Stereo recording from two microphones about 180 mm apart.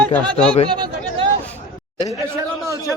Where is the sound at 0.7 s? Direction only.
25° right (ahead or behind).